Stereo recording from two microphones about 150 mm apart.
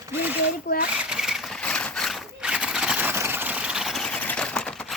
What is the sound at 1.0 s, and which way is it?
Vehicle, 5° right (ahead or behind).